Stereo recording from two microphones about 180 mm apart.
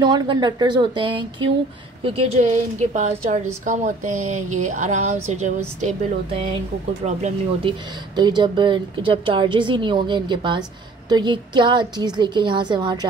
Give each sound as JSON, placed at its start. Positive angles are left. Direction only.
{"t": 0.0, "sound": "a woman's voice", "side_deg": -25}
{"t": 2.0, "sound": "speech", "side_deg": -35}
{"t": 8.2, "sound": "a woman's voice", "side_deg": -25}